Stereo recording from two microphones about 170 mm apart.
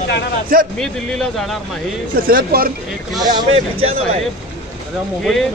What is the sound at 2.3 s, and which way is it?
Speech, 60° right (ahead or behind).